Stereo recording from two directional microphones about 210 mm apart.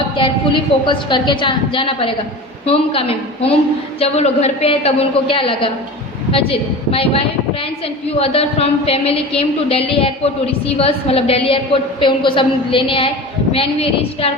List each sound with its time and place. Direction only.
0.2 s a woman's voice: 25° left (ahead or behind)
4.0 s a woman's voice: 30° left (ahead or behind)